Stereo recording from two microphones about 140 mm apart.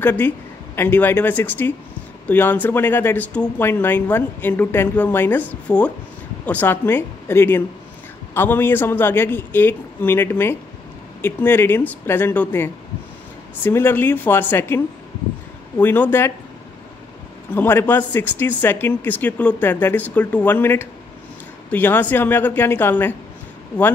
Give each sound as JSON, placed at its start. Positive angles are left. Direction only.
{"t": 0.0, "sound": "speech", "side_deg": 15}
{"t": 15.8, "sound": "speech", "side_deg": 15}
{"t": 17.6, "sound": "speech", "side_deg": 15}